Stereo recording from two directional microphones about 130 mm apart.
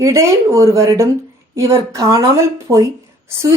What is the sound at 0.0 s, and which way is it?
Speech, 25° right (ahead or behind).